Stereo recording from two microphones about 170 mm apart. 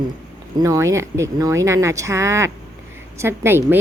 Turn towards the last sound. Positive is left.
turn(degrees=-15)  # may be behind; listen again after turning